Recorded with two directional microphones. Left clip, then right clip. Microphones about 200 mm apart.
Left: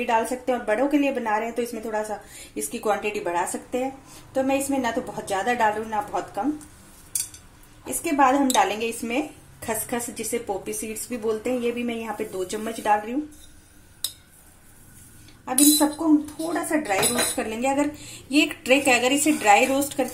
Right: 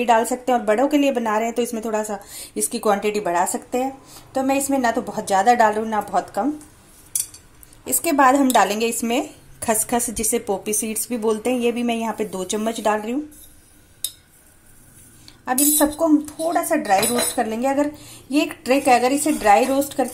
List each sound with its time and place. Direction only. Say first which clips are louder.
0.0 s a woman's voice: right 5 dB; 40° right (ahead or behind)
7.8 s speech: right 4 dB; 45° right (ahead or behind)
15.4 s a woman's voice: right 1 dB; 40° right (ahead or behind)
18.7 s a woman's voice: right 4 dB; 10° right (ahead or behind)
19.2 s a woman's voice: even; 35° right (ahead or behind)